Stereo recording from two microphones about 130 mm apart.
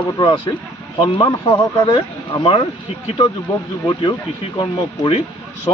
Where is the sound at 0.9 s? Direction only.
40° left (ahead or behind).